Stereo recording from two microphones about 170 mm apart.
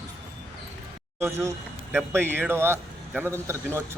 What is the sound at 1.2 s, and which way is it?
A man's voice, 15° right (ahead or behind).